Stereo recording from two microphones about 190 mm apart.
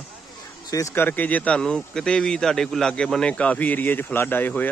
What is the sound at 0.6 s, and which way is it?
Speech, 15° left (ahead or behind).